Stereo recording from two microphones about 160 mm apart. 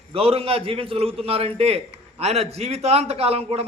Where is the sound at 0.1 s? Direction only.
35° right (ahead or behind).